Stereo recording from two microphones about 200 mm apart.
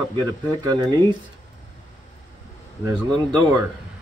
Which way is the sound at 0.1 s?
20° right (ahead or behind).